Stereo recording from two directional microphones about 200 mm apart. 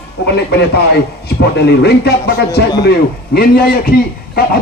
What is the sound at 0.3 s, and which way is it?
A man's voice, 55° left (ahead or behind).